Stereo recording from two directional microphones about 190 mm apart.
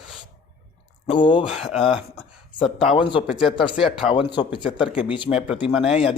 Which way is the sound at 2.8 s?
25° left (ahead or behind).